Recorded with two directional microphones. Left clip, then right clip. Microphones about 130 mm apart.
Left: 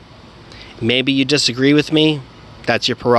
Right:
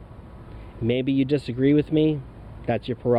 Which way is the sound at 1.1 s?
30° left (ahead or behind).